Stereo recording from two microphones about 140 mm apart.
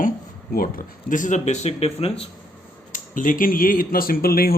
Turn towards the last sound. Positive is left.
turn(degrees=90)